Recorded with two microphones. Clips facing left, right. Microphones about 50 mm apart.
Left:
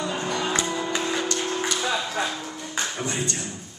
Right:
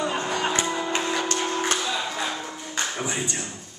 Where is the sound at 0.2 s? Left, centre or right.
Right.